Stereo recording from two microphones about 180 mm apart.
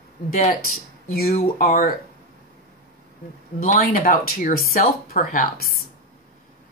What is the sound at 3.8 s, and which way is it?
Speech, 55° left (ahead or behind).